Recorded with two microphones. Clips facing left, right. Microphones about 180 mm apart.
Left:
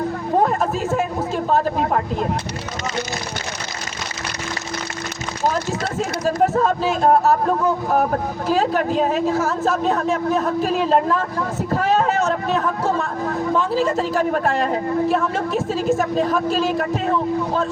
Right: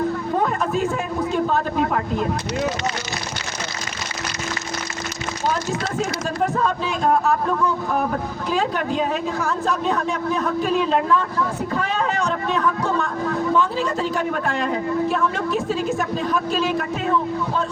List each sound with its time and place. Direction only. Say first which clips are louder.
1.5 s speech: left 2 dB; 35° left (ahead or behind)
6.2 s speech: left 6 dB; 40° left (ahead or behind)
15.5 s a woman's voice: left 3 dB; centre (ahead or behind)
16.7 s speech: left 1 dB; 35° left (ahead or behind)